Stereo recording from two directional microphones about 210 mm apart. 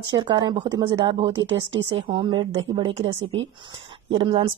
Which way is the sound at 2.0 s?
25° right (ahead or behind).